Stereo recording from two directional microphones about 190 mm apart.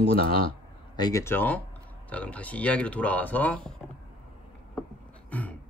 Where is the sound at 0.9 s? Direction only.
20° left (ahead or behind).